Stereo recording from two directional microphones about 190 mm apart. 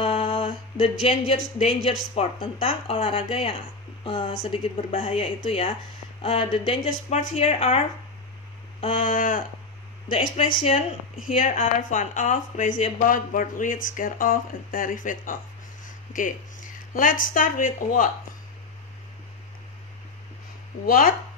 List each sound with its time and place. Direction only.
0.0 s a sound: 30° left (ahead or behind)
1.0 s a woman's voice: 30° left (ahead or behind)
9.0 s speech: 45° left (ahead or behind)
10.2 s speech: 35° left (ahead or behind)
20.8 s speech: 50° left (ahead or behind)